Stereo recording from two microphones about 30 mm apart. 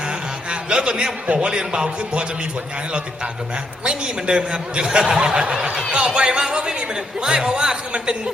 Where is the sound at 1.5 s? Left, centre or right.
Right.